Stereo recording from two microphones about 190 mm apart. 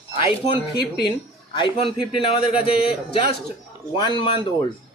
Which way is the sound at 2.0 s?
5° right (ahead or behind).